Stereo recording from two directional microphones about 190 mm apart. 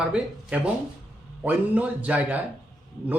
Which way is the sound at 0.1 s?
5° right (ahead or behind).